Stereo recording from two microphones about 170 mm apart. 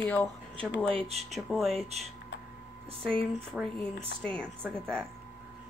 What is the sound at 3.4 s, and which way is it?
Speech, centre (ahead or behind).